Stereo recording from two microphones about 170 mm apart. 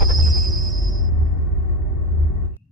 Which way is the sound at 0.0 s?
Centre (ahead or behind).